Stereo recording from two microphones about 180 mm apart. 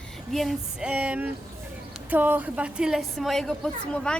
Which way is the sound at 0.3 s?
Centre (ahead or behind).